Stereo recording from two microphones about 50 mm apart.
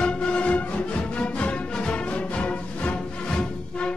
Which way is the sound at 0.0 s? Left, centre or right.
Left.